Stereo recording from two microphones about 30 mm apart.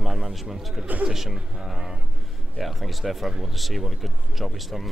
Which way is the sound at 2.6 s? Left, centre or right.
Centre.